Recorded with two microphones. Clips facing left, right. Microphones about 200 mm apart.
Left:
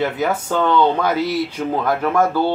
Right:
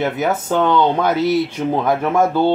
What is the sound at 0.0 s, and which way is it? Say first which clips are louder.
Speech: right 1 dB; 15° right (ahead or behind).